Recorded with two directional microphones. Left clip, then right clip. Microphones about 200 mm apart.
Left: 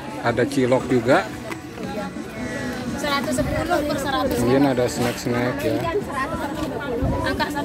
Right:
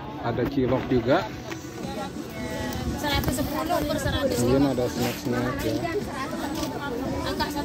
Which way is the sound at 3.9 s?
55° left (ahead or behind).